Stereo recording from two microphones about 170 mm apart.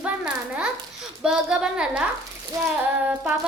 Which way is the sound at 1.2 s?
5° right (ahead or behind).